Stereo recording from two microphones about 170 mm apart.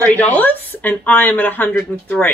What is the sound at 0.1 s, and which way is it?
A woman's voice, 10° left (ahead or behind).